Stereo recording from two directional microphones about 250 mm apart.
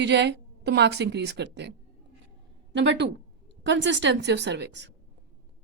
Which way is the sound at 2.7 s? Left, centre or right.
Right.